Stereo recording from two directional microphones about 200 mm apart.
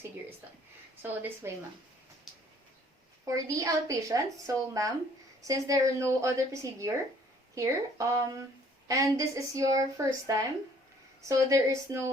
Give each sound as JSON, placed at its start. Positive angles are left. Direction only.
{"t": 1.0, "sound": "a woman's voice", "side_deg": -10}
{"t": 3.2, "sound": "a woman's voice", "side_deg": -15}